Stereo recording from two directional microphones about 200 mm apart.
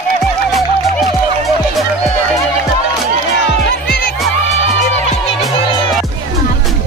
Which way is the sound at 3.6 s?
50° left (ahead or behind).